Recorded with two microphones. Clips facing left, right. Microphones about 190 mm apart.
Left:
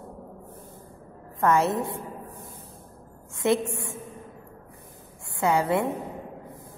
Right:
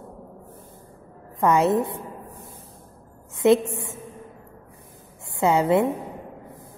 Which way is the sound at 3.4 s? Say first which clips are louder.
Right 6 dB; 20° right (ahead or behind).